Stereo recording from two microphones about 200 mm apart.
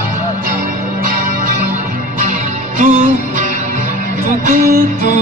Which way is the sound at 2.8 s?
35° right (ahead or behind).